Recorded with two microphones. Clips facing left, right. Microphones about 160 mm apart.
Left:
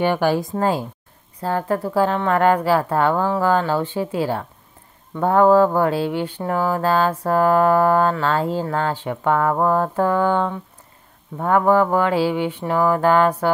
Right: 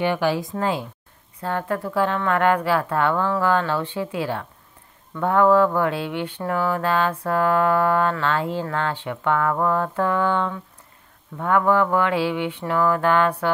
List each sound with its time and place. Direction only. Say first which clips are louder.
0.0 s speech: left 3 dB; 45° left (ahead or behind)
1.4 s mantra: left 4 dB; 35° left (ahead or behind)